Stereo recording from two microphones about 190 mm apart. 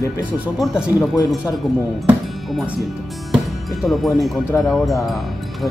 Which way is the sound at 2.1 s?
5° right (ahead or behind).